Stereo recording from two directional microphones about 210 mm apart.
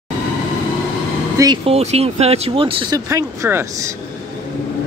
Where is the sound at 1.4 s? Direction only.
25° right (ahead or behind).